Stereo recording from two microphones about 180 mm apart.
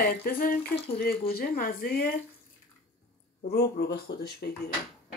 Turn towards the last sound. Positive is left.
turn(degrees=60)  # may be behind; listen again after turning